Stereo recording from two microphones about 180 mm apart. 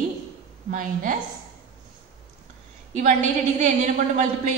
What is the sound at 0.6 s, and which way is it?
Speech, 50° right (ahead or behind).